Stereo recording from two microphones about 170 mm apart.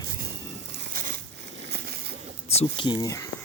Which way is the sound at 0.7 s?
55° right (ahead or behind).